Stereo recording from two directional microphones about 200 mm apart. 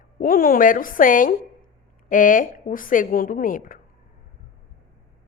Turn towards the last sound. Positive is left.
turn(degrees=40)  # may be behind; listen again after turning